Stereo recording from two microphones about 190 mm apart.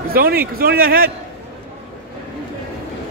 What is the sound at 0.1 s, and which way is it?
A man's voice, 50° right (ahead or behind).